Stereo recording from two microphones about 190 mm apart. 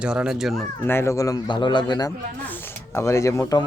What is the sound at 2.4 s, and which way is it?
Speech, 10° left (ahead or behind).